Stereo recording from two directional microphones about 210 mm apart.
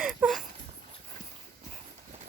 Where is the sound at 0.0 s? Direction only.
Centre (ahead or behind).